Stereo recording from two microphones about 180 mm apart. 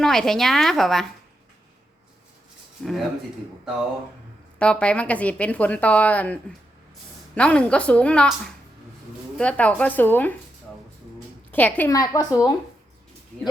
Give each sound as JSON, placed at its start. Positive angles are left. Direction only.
{"t": 0.0, "sound": "a woman's voice", "side_deg": 0}
{"t": 2.8, "sound": "a woman's voice", "side_deg": 0}
{"t": 4.6, "sound": "speech", "side_deg": 5}
{"t": 9.4, "sound": "speech", "side_deg": 5}
{"t": 11.5, "sound": "a woman's voice", "side_deg": 10}